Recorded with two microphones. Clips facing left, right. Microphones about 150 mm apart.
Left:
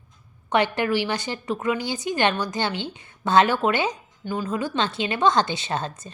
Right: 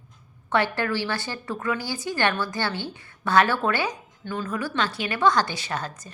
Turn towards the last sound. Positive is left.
turn(degrees=25)  # may be behind; listen again after turning